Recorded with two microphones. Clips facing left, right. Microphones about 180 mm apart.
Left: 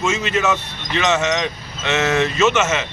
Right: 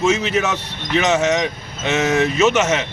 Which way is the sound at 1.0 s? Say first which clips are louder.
Right 1 dB; 15° right (ahead or behind).